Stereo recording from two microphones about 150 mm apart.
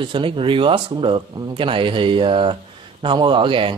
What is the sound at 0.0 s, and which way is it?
Speech, 35° right (ahead or behind).